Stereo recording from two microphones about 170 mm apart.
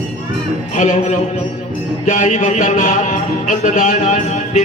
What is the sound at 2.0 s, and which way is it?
Speech, 45° left (ahead or behind).